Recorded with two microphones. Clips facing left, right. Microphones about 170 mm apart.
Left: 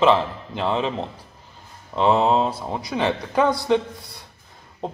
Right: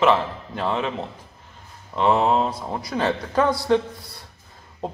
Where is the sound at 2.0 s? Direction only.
25° left (ahead or behind).